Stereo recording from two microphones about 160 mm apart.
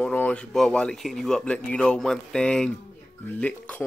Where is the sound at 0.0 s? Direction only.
10° left (ahead or behind).